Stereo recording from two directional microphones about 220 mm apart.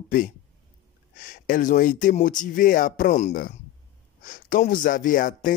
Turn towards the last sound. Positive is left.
turn(degrees=35)  # may be behind; listen again after turning